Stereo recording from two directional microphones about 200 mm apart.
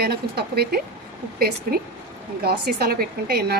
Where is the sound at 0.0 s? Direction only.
55° right (ahead or behind).